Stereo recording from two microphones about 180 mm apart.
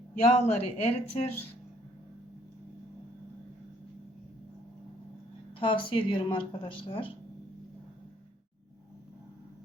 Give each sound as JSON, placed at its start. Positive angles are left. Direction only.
{"t": 0.3, "sound": "speech", "side_deg": 35}
{"t": 5.5, "sound": "speech", "side_deg": 30}